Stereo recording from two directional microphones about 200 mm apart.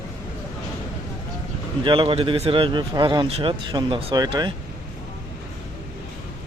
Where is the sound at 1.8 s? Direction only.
25° right (ahead or behind).